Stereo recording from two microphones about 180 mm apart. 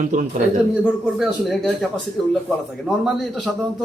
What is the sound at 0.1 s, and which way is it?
Speech, 45° right (ahead or behind).